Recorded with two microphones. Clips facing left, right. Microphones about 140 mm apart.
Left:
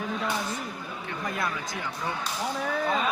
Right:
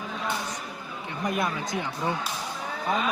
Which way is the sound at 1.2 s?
20° right (ahead or behind).